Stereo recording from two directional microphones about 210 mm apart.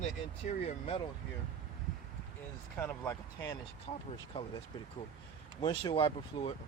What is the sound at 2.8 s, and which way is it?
Speech, 10° left (ahead or behind).